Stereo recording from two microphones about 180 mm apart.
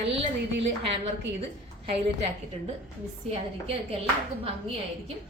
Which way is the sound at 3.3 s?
35° right (ahead or behind).